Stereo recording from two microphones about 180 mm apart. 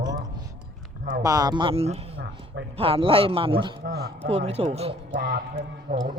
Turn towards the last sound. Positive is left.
turn(degrees=-50)  # may be behind; listen again after turning